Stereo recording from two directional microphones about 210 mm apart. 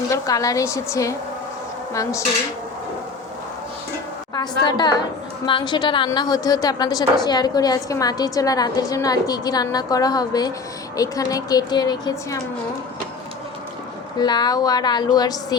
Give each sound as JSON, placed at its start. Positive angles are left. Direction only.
{"t": 0.1, "sound": "a woman's voice", "side_deg": 15}
{"t": 4.4, "sound": "a woman's voice", "side_deg": 20}
{"t": 14.2, "sound": "a woman's voice", "side_deg": 20}